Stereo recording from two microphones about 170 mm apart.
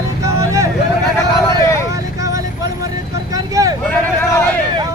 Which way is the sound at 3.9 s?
15° left (ahead or behind).